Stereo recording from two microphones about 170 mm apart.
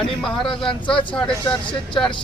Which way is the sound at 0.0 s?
Centre (ahead or behind).